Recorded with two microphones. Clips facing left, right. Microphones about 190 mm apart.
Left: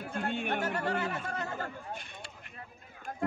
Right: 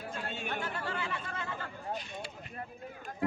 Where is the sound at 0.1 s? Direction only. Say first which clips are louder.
Left 7 dB; 60° left (ahead or behind); by 1.7 s 45° left (ahead or behind).